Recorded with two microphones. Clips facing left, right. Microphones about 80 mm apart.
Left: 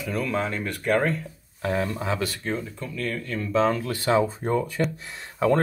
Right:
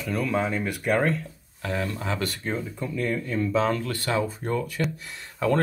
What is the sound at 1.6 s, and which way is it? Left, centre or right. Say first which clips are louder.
Speech: left 3 dB; left.